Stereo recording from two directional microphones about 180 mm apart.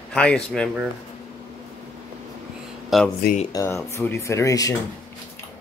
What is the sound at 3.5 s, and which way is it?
Speech, 20° left (ahead or behind).